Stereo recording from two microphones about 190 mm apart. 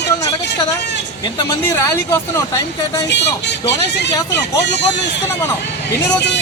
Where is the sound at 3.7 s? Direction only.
65° left (ahead or behind).